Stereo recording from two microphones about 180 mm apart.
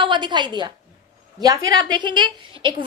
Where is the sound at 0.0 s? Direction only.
25° right (ahead or behind).